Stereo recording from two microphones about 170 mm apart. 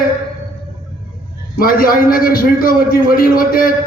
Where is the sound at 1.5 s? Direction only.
55° left (ahead or behind).